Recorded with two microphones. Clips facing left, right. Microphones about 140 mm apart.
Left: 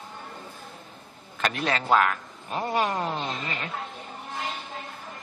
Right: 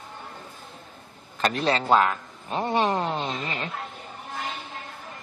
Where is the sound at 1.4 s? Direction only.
35° right (ahead or behind).